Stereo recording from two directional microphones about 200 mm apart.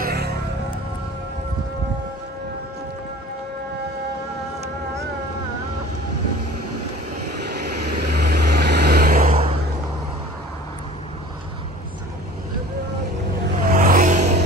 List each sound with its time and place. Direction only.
0.0 s music: 50° right (ahead or behind)
7.6 s vehicle: 50° right (ahead or behind)
13.7 s vehicle: 45° right (ahead or behind)